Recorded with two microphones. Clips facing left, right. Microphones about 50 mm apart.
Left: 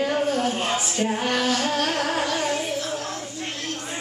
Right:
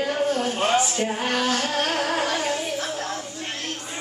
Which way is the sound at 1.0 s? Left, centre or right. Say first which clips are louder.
Left 1 dB; centre.